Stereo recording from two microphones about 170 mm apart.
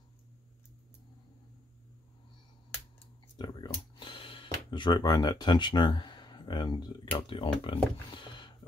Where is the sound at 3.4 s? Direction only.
25° left (ahead or behind).